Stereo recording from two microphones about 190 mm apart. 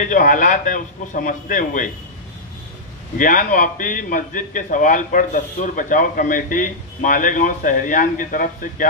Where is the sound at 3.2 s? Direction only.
45° left (ahead or behind).